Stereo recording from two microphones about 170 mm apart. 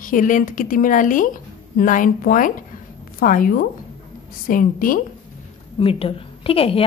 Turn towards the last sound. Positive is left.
turn(degrees=35)  # may be behind; listen again after turning